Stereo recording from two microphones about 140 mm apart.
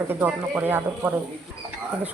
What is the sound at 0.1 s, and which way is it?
Speech, 10° right (ahead or behind).